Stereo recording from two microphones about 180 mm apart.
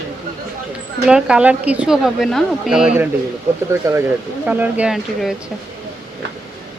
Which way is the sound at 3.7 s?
15° right (ahead or behind).